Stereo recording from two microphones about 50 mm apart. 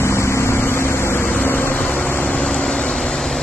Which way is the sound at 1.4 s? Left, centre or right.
Left.